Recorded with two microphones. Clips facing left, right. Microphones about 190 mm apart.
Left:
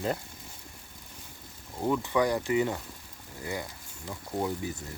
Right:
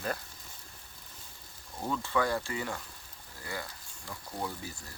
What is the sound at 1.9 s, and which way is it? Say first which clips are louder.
Speech: left 4 dB; 15° left (ahead or behind).